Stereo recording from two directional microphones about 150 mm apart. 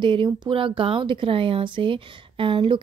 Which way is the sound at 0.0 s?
30° right (ahead or behind).